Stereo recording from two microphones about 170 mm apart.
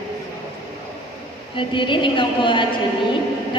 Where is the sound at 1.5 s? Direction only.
30° left (ahead or behind).